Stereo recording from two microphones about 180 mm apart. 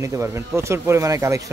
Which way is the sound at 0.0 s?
15° right (ahead or behind).